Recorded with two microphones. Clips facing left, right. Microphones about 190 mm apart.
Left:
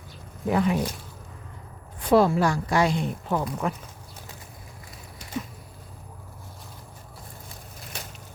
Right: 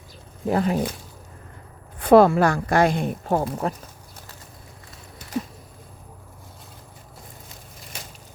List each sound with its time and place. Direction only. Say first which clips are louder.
0.4 s speech: right 1 dB; 40° right (ahead or behind)
2.0 s a woman's voice: right 5 dB; 60° right (ahead or behind)
3.4 s speech: right 2 dB; 35° right (ahead or behind)